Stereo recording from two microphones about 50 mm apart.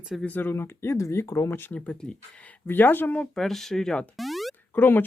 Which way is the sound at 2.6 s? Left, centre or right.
Left.